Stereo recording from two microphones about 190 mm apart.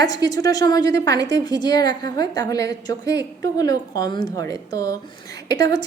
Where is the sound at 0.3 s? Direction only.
20° left (ahead or behind).